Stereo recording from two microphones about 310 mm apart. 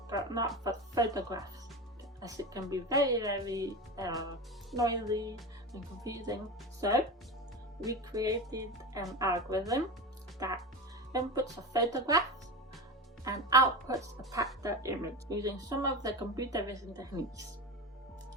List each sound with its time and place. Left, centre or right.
0.1 s speech: centre
13.2 s speech: centre